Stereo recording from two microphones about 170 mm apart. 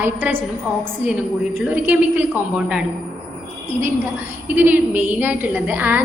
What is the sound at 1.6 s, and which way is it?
Speech, 10° right (ahead or behind).